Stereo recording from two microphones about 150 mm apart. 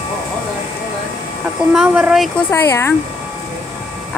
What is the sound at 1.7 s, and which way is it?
Speech, 5° right (ahead or behind).